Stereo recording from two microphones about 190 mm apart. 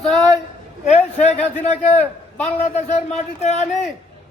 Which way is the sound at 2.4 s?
35° left (ahead or behind).